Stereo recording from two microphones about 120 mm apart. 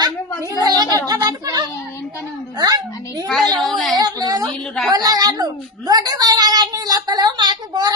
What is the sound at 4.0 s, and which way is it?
Speech, 30° right (ahead or behind).